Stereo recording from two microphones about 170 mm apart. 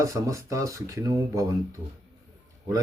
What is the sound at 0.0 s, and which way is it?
Speech, 20° right (ahead or behind).